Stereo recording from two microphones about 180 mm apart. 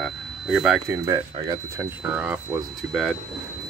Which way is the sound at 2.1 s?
5° right (ahead or behind).